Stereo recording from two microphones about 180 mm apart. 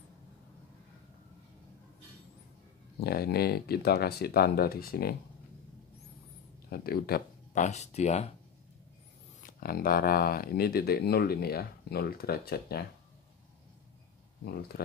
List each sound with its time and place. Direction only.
3.0 s speech: 60° left (ahead or behind)
6.7 s speech: 60° left (ahead or behind)
7.6 s speech: 40° left (ahead or behind)
9.6 s speech: 55° left (ahead or behind)
14.4 s speech: 60° left (ahead or behind)